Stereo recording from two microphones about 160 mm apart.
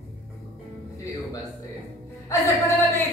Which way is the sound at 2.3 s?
20° left (ahead or behind).